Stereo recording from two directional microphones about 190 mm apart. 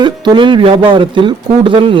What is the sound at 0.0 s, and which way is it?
Speech, 25° right (ahead or behind).